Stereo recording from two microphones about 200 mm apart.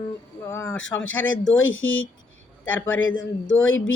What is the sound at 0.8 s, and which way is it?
Speech, 75° left (ahead or behind).